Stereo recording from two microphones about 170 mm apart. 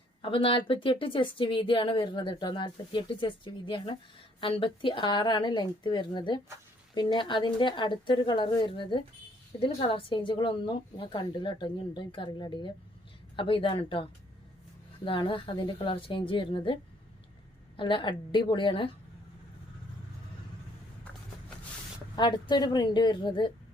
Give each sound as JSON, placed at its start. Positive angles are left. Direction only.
{"t": 0.2, "sound": "a woman's voice", "side_deg": 30}
{"t": 17.7, "sound": "speech", "side_deg": 30}
{"t": 22.1, "sound": "speech", "side_deg": 25}